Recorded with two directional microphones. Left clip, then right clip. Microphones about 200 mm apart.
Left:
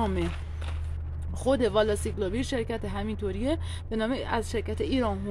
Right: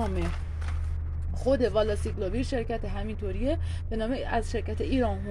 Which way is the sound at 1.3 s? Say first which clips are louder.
Left 1 dB; 30° left (ahead or behind).